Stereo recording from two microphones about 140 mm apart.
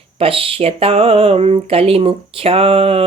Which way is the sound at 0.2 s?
40° right (ahead or behind).